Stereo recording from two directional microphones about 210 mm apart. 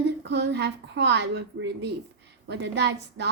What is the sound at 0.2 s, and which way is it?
A woman's voice, 55° right (ahead or behind).